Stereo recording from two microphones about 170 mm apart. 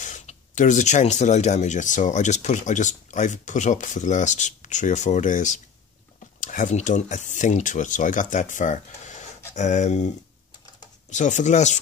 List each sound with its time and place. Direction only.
0.0 s speech: 45° left (ahead or behind)